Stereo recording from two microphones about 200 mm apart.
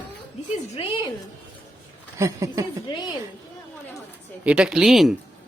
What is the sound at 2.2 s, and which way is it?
Speech, 15° right (ahead or behind).